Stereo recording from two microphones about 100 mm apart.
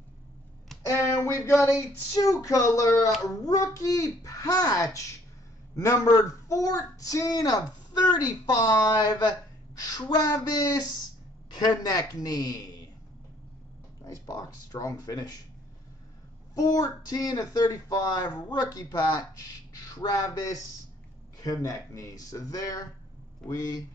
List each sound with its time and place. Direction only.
0.8 s speech: 30° left (ahead or behind)
1.4 s female singing: 25° left (ahead or behind)
2.4 s speech: 30° left (ahead or behind)
14.0 s speech: 35° left (ahead or behind)
16.5 s speech: 35° left (ahead or behind)